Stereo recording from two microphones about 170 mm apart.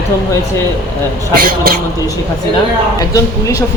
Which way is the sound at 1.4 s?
60° right (ahead or behind).